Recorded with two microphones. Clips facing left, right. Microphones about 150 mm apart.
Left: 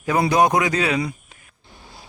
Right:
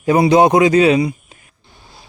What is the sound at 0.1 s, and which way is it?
A man's voice, 25° right (ahead or behind).